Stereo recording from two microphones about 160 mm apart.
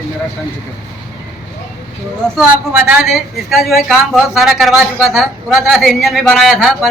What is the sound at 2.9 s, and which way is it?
A woman's voice, centre (ahead or behind).